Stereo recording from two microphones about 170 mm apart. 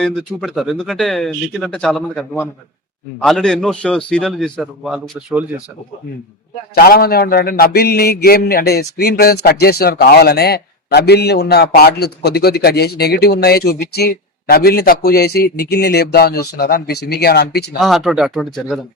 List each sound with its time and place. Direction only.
0.0 s speech: centre (ahead or behind)
6.7 s a man's voice: 65° left (ahead or behind)
17.7 s speech: centre (ahead or behind)